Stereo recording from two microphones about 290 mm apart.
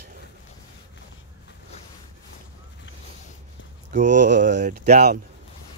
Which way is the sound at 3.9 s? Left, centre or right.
Right.